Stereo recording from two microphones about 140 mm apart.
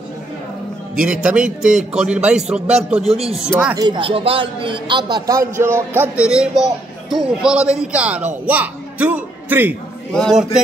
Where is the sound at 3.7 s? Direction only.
30° right (ahead or behind).